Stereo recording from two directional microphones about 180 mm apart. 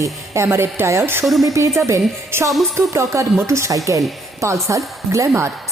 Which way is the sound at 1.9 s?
15° right (ahead or behind).